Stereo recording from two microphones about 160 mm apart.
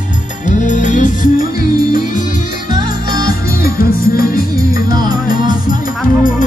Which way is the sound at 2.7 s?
20° right (ahead or behind).